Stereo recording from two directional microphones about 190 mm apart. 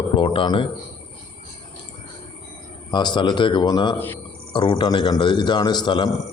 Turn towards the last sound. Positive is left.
turn(degrees=25)  # may be behind; listen again after turning